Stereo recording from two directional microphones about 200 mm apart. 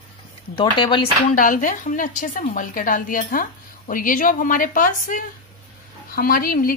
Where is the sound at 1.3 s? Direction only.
40° left (ahead or behind).